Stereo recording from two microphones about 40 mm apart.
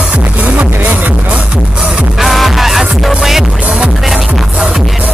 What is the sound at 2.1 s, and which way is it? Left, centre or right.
Music, centre.